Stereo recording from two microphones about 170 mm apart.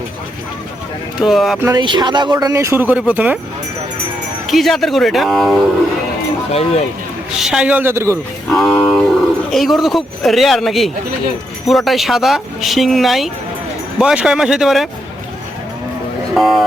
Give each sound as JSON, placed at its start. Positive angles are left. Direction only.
{"t": 1.2, "sound": "speech", "side_deg": 0}
{"t": 1.5, "sound": "a man's voice", "side_deg": -15}
{"t": 1.8, "sound": "speech", "side_deg": -25}
{"t": 4.4, "sound": "speech", "side_deg": 0}
{"t": 6.5, "sound": "speech", "side_deg": 35}
{"t": 7.3, "sound": "a man's voice", "side_deg": -5}
{"t": 8.4, "sound": "speech", "side_deg": 5}
{"t": 16.3, "sound": "speech", "side_deg": 0}